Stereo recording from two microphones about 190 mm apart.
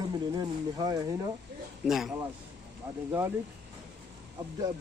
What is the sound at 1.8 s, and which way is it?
Speech, centre (ahead or behind).